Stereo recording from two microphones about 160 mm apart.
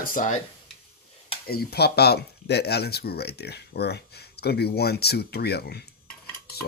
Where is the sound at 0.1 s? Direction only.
55° left (ahead or behind).